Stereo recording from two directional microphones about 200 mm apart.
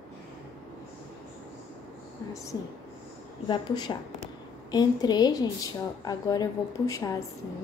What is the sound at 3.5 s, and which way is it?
A woman's voice, 20° left (ahead or behind).